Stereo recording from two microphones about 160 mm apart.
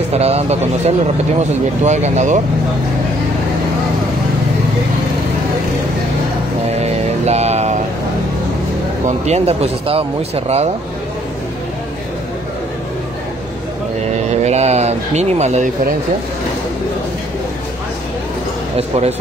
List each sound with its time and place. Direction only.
0.1 s speech: 40° right (ahead or behind)
6.7 s music: 40° right (ahead or behind)
9.0 s speech: 45° right (ahead or behind)
14.1 s speech: 45° right (ahead or behind)
18.8 s speech: 40° right (ahead or behind)